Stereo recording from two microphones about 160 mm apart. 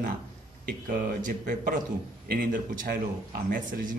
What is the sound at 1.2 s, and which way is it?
A man's voice, 55° right (ahead or behind).